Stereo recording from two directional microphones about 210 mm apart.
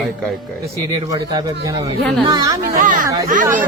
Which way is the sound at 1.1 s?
15° right (ahead or behind).